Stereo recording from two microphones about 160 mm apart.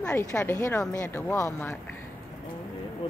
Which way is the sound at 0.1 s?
20° left (ahead or behind).